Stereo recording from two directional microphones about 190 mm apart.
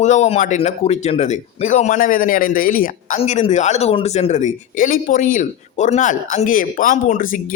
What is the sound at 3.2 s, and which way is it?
Speech, 35° left (ahead or behind).